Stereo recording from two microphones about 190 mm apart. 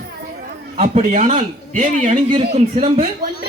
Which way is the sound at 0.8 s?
40° right (ahead or behind).